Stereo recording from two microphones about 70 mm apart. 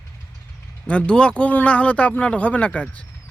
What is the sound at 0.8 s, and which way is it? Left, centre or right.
Speech, centre.